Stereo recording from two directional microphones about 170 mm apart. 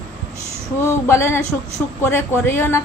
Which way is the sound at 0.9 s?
15° left (ahead or behind).